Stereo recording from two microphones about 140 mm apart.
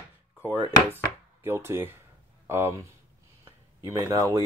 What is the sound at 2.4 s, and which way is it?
Speech, 20° right (ahead or behind).